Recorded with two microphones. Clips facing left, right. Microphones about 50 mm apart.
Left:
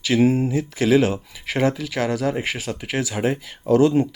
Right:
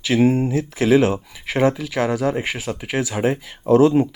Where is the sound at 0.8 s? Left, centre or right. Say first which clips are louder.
Right 2 dB; centre.